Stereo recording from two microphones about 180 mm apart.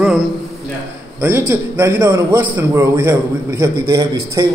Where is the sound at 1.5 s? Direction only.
15° right (ahead or behind).